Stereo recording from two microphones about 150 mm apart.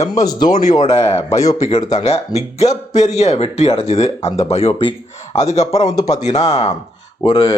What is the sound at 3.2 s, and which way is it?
Speech, 45° left (ahead or behind).